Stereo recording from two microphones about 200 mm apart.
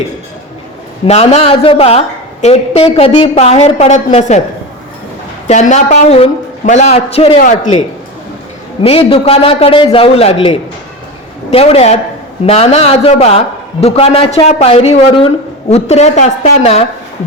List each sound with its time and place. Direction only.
1.0 s a woman's voice: 30° left (ahead or behind)
5.5 s a woman's voice: 35° left (ahead or behind)
7.3 s a woman's voice: 40° left (ahead or behind)
8.8 s a man's voice: 25° left (ahead or behind)